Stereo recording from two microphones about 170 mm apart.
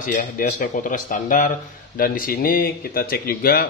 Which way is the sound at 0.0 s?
50° left (ahead or behind).